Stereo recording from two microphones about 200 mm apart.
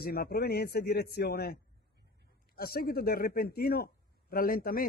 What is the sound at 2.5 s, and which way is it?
Speech, 50° left (ahead or behind).